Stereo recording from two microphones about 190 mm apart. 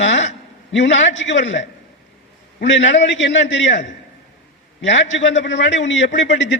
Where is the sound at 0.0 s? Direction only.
70° left (ahead or behind).